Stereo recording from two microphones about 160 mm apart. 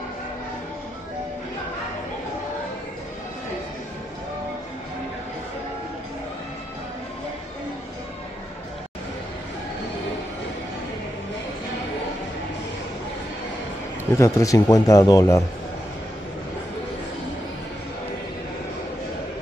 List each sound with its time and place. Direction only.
14.1 s a man's voice: 20° left (ahead or behind)